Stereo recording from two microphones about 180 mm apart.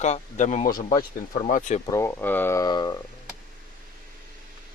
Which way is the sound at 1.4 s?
40° left (ahead or behind).